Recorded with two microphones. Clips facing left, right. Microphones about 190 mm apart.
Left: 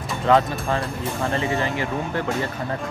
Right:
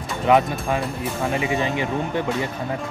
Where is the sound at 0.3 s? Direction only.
15° right (ahead or behind).